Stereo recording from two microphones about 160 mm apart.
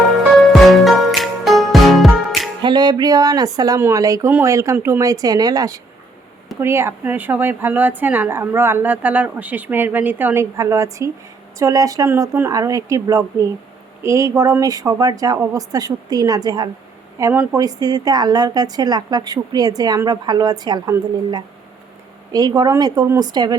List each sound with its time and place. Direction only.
0.4 s music: centre (ahead or behind)
2.6 s a woman's voice: 25° right (ahead or behind)